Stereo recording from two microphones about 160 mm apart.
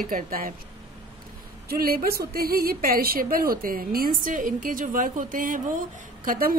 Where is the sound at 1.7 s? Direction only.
70° right (ahead or behind).